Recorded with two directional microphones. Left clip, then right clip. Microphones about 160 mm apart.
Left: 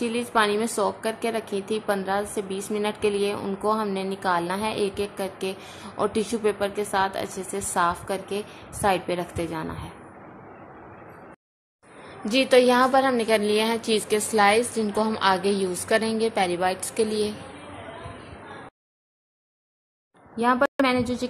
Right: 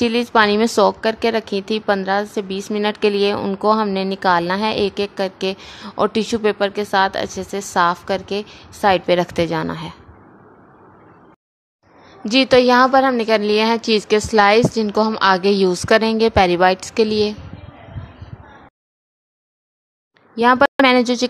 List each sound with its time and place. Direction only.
0.0 s a woman's voice: 40° right (ahead or behind)
12.3 s a woman's voice: 50° right (ahead or behind)
20.3 s a woman's voice: 45° right (ahead or behind)